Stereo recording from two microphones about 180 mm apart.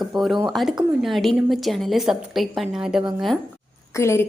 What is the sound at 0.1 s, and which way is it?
Speech, 25° right (ahead or behind).